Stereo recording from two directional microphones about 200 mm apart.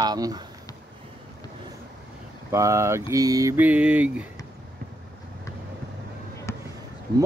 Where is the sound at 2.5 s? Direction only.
15° right (ahead or behind).